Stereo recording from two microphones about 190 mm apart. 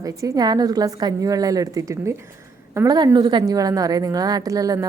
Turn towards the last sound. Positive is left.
turn(degrees=-20)  # may be behind; listen again after turning